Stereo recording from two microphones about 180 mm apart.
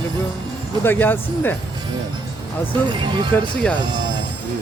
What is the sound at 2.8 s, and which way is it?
Speech, 25° right (ahead or behind).